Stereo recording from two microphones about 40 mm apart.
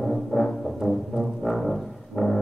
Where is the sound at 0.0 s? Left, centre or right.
Centre.